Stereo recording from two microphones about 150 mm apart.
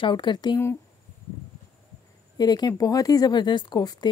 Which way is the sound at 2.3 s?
25° left (ahead or behind).